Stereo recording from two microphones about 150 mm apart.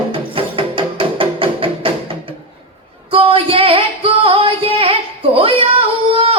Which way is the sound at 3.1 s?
35° right (ahead or behind).